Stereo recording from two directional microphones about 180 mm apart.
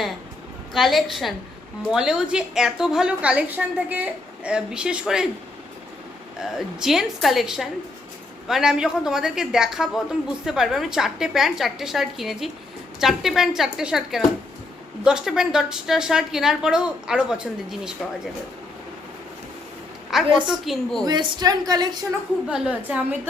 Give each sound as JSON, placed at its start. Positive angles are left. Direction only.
{"t": 0.7, "sound": "a woman's voice", "side_deg": 0}
{"t": 6.4, "sound": "a woman's voice", "side_deg": 0}
{"t": 20.1, "sound": "a woman's voice", "side_deg": 0}
{"t": 21.0, "sound": "a woman's voice", "side_deg": -25}
{"t": 22.4, "sound": "a woman's voice", "side_deg": -5}